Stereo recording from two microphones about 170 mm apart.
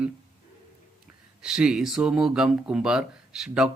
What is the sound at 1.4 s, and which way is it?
Speech, 5° right (ahead or behind).